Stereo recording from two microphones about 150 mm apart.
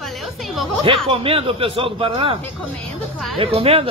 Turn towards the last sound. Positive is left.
turn(degrees=-40)  # may be behind; listen again after turning